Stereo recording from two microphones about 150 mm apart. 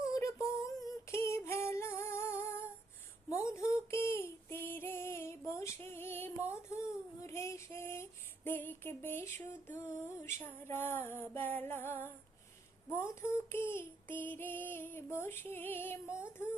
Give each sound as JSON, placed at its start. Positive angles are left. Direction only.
{"t": 0.0, "sound": "female singing", "side_deg": 20}
{"t": 8.4, "sound": "a sound", "side_deg": 15}
{"t": 10.3, "sound": "female singing", "side_deg": 15}